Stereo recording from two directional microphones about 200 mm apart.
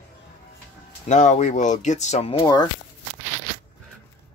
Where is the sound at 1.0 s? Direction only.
35° left (ahead or behind).